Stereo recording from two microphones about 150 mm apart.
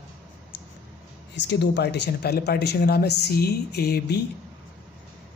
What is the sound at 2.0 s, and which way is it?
Speech, 90° left.